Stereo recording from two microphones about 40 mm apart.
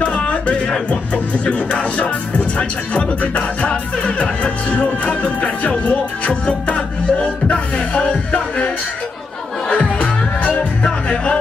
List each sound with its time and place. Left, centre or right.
0.0 s speech: left
7.5 s music: left
10.5 s music: left